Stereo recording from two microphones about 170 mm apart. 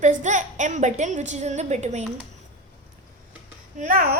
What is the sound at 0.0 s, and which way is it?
A woman's voice, 45° right (ahead or behind).